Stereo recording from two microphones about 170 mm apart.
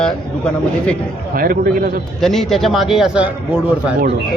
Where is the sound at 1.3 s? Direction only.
55° right (ahead or behind).